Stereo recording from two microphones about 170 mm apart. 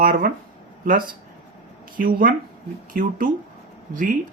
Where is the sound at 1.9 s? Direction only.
55° right (ahead or behind).